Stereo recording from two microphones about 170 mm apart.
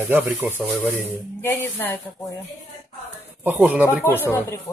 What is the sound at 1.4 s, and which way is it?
Speech, 10° left (ahead or behind).